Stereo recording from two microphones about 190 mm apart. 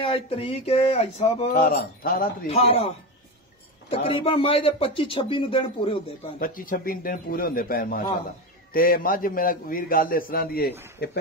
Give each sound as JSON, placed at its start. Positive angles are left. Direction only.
{"t": 0.0, "sound": "speech", "side_deg": 30}
{"t": 1.5, "sound": "a man's voice", "side_deg": 55}
{"t": 2.4, "sound": "speech", "side_deg": 30}
{"t": 3.9, "sound": "speech", "side_deg": 30}
{"t": 6.4, "sound": "a man's voice", "side_deg": 50}